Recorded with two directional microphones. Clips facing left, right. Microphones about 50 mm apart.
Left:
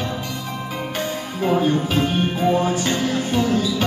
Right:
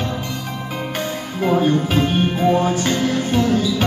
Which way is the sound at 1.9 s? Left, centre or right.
Right.